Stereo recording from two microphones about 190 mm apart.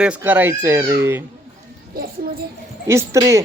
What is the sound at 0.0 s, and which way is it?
Speech, 10° right (ahead or behind).